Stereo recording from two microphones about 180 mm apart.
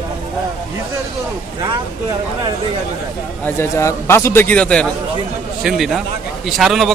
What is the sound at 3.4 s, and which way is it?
A man's voice, 15° left (ahead or behind).